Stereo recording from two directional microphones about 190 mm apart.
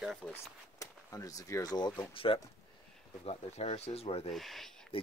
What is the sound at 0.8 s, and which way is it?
Speech, 15° left (ahead or behind).